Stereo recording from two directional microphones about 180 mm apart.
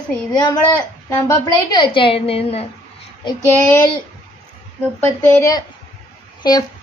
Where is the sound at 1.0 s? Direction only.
20° left (ahead or behind).